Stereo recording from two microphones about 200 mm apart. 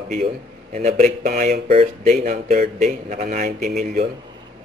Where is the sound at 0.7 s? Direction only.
40° right (ahead or behind).